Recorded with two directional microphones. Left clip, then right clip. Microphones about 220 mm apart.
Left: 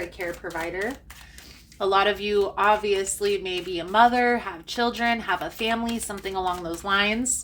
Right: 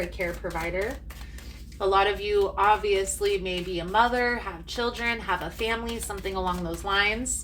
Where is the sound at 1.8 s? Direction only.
45° left (ahead or behind).